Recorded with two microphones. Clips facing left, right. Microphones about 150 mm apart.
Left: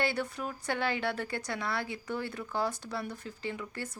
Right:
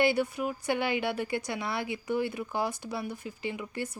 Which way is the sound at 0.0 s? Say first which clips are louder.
Right 6 dB; 10° right (ahead or behind).